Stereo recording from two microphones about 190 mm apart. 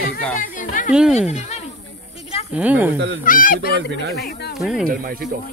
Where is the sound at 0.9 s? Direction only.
5° right (ahead or behind).